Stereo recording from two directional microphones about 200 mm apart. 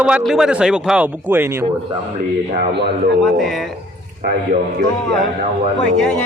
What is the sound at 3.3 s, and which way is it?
Speech, centre (ahead or behind).